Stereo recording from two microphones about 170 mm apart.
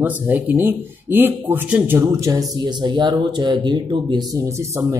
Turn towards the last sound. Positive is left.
turn(degrees=-20)  # may be behind; listen again after turning